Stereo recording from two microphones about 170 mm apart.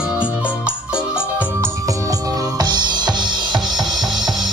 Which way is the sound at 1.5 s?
15° right (ahead or behind).